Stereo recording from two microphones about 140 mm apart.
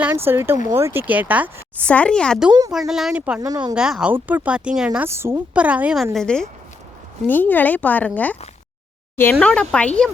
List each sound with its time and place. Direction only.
0.3 s speech: 15° right (ahead or behind)
1.8 s speech: 10° left (ahead or behind)
2.5 s speech: 25° right (ahead or behind)
2.7 s speech: centre (ahead or behind)
3.4 s speech: 25° right (ahead or behind)
3.8 s speech: 5° right (ahead or behind)
5.0 s speech: 20° right (ahead or behind)
6.1 s speech: 5° left (ahead or behind)
9.4 s speech: 5° left (ahead or behind)